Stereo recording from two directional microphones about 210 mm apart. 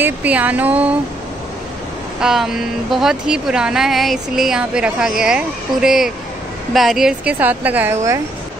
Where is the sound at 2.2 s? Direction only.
Centre (ahead or behind).